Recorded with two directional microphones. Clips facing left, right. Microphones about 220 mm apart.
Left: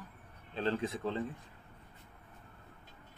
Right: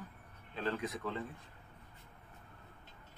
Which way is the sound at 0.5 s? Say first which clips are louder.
Left 4 dB; 30° left (ahead or behind).